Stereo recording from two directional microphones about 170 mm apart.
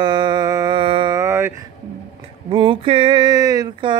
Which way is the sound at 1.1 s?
15° right (ahead or behind).